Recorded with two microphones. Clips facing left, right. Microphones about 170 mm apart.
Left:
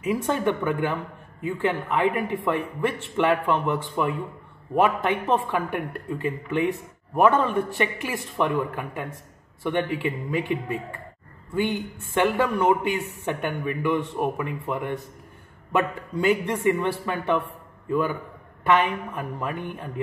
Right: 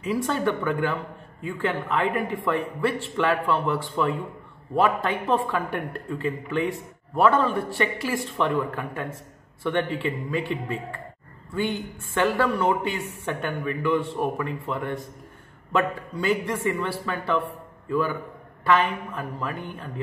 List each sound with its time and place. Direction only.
0.0 s speech: 15° left (ahead or behind)
18.7 s speech: 15° left (ahead or behind)